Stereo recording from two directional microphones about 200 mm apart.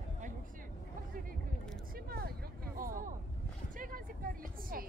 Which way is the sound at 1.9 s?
50° right (ahead or behind).